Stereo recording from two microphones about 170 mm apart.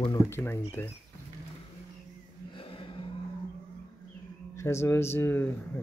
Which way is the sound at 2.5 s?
30° left (ahead or behind).